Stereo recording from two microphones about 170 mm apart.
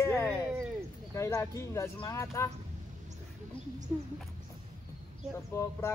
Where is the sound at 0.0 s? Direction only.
15° left (ahead or behind).